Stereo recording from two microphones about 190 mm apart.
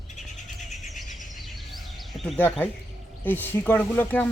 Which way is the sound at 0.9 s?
Centre (ahead or behind).